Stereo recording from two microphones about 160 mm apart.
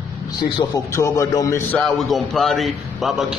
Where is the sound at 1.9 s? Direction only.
Centre (ahead or behind).